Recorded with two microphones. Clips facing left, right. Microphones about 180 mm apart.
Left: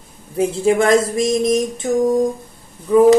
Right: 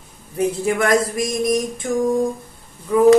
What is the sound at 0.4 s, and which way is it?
Speech, 30° left (ahead or behind).